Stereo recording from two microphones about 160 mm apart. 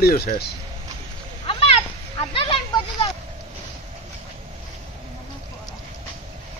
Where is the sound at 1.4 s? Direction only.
35° left (ahead or behind).